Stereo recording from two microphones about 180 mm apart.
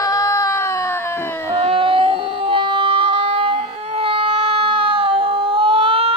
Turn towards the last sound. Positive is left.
turn(degrees=-30)  # may be behind; listen again after turning